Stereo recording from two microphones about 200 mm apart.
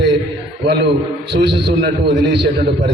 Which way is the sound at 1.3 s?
55° right (ahead or behind).